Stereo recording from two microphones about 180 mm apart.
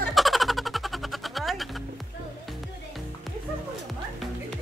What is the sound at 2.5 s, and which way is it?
Music, centre (ahead or behind).